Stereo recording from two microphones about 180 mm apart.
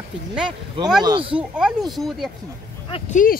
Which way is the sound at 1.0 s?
25° right (ahead or behind).